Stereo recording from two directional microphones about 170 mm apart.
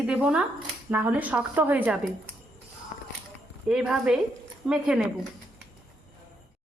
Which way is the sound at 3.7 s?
5° right (ahead or behind).